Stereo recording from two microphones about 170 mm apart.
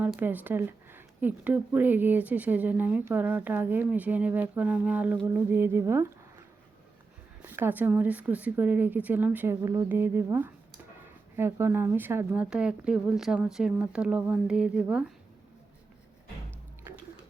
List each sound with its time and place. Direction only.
0.2 s speech: 10° right (ahead or behind)
7.4 s speech: 15° right (ahead or behind)